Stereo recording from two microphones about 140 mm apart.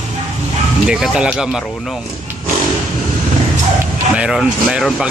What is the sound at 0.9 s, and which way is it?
Speech, 5° right (ahead or behind).